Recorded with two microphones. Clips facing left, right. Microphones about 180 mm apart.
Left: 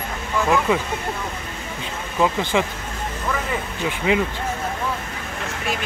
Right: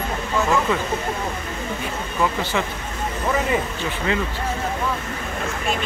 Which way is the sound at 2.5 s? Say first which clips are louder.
Left 5 dB; 15° left (ahead or behind).